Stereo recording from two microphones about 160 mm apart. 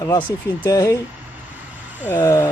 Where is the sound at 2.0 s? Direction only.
15° left (ahead or behind).